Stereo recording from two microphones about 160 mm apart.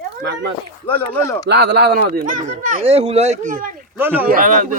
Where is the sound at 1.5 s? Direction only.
90° right.